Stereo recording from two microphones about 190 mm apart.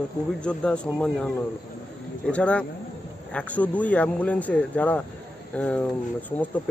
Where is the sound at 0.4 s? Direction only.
5° left (ahead or behind).